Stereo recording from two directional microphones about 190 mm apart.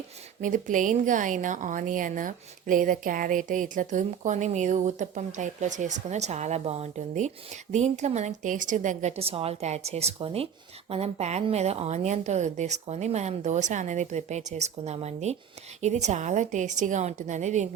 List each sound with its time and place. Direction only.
0.4 s a woman's voice: 45° right (ahead or behind)